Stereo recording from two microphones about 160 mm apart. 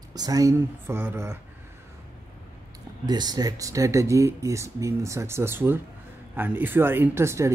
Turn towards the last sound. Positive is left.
turn(degrees=-15)  # may be behind; listen again after turning